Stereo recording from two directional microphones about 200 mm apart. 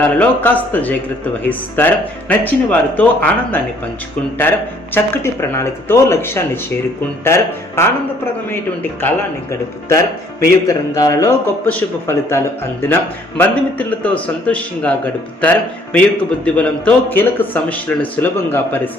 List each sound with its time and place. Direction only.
0.0 s speech: 10° left (ahead or behind)
10.7 s speech: 15° left (ahead or behind)